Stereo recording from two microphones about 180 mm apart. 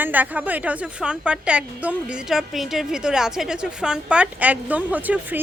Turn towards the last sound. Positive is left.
turn(degrees=-10)  # may be behind; listen again after turning